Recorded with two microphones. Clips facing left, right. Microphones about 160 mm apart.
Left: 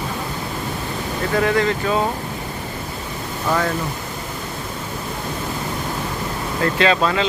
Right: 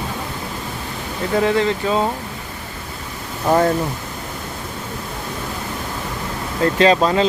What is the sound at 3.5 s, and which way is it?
Speech, 30° right (ahead or behind).